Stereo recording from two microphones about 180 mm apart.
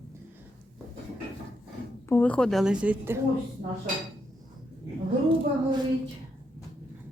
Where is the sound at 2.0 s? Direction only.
10° left (ahead or behind); by 3.1 s 5° right (ahead or behind).